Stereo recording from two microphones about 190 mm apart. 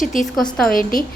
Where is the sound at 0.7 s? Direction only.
45° left (ahead or behind).